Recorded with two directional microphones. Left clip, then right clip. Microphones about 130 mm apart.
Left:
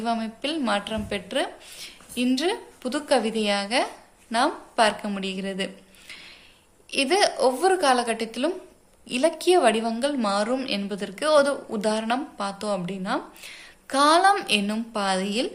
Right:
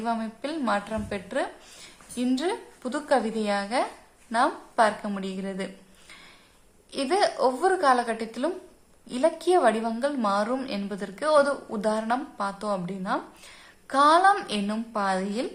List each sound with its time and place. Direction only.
0.0 s a woman's voice: 15° left (ahead or behind)
6.9 s a woman's voice: 15° left (ahead or behind)